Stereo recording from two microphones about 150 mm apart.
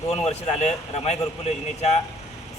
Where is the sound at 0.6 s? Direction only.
45° left (ahead or behind).